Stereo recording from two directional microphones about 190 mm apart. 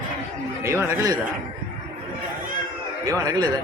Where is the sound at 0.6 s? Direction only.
15° right (ahead or behind).